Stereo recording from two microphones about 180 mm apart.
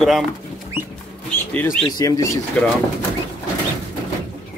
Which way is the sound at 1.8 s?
20° left (ahead or behind).